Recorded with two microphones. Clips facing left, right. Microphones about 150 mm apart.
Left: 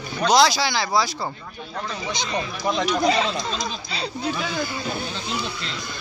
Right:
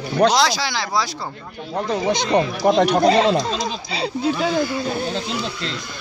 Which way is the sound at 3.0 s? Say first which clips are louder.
Right 6 dB; 35° right (ahead or behind).